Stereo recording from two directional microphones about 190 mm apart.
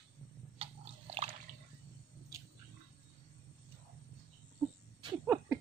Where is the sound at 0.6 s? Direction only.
30° right (ahead or behind).